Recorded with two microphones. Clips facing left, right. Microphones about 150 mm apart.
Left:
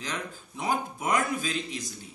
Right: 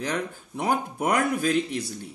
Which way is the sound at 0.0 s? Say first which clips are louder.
Right 7 dB; 60° right (ahead or behind).